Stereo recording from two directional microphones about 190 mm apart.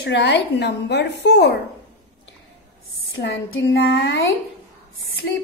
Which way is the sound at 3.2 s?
60° left (ahead or behind).